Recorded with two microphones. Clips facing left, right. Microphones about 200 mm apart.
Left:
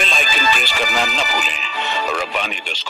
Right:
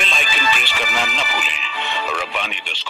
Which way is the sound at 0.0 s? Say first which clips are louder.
Left 3 dB; 40° left (ahead or behind).